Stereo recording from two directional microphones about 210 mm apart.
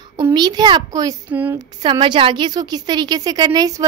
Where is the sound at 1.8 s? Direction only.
20° right (ahead or behind).